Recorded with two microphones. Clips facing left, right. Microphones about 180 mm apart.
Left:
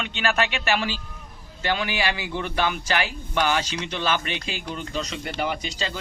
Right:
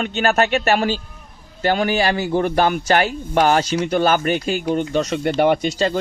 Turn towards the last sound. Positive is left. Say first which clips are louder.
# right 11 dB
turn(degrees=-50)  # may be behind; listen again after turning